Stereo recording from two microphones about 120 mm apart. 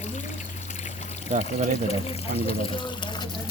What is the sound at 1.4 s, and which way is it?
Speech, 60° left (ahead or behind).